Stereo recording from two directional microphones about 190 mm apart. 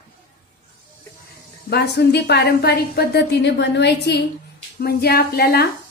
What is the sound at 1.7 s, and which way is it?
A woman's voice, 60° left (ahead or behind).